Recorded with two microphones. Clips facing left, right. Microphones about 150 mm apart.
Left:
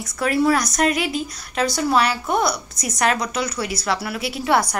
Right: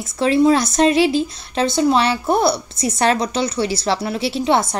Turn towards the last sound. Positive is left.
turn(degrees=-25)  # may be behind; listen again after turning